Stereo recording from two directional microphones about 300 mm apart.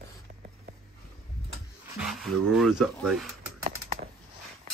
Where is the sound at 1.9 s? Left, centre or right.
Centre.